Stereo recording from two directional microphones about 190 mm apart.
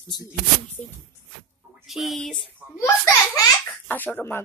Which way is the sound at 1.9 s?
Centre (ahead or behind).